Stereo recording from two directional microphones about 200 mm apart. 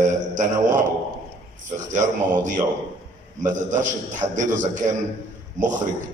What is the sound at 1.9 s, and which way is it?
A man's voice, 40° right (ahead or behind).